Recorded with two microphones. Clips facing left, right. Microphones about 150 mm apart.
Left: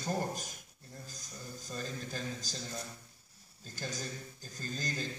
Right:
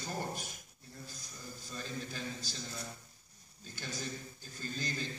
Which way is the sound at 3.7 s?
45° left (ahead or behind).